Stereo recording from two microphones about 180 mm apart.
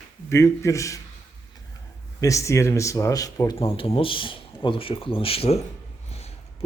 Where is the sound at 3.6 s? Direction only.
30° left (ahead or behind).